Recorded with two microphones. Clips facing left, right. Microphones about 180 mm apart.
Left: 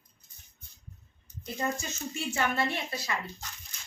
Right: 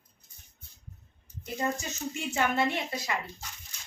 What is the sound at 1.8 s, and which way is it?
Speech, 20° right (ahead or behind).